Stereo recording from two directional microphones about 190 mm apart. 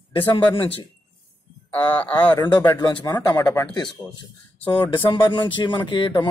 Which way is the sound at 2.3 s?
20° left (ahead or behind).